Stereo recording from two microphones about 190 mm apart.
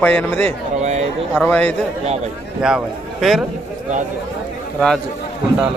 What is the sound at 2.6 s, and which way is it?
Speech, 5° right (ahead or behind).